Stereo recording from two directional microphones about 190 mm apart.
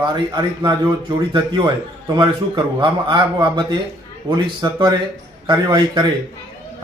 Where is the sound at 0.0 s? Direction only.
25° right (ahead or behind).